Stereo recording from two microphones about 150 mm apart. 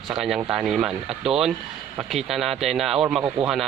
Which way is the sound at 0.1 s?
Centre (ahead or behind).